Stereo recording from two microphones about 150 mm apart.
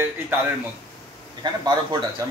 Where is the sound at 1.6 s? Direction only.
30° right (ahead or behind).